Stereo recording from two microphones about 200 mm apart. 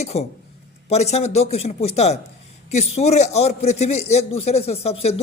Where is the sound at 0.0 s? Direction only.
30° left (ahead or behind).